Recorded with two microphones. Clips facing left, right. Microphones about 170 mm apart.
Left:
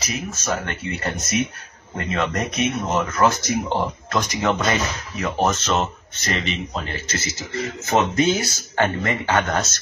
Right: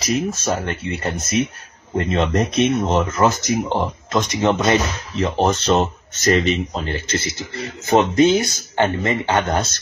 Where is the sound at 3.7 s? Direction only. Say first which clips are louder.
Right 3 dB; 20° right (ahead or behind).